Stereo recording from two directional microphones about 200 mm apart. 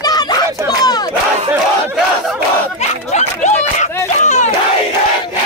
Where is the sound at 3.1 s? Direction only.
35° left (ahead or behind).